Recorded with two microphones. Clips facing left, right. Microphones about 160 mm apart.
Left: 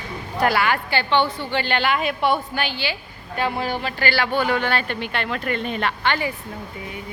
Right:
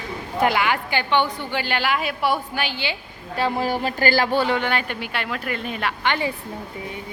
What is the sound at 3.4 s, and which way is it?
Speech, 40° right (ahead or behind).